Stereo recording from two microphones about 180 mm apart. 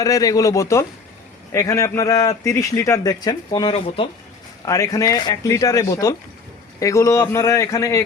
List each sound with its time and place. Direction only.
0.0 s speech: 20° left (ahead or behind)
4.6 s speech: 20° left (ahead or behind)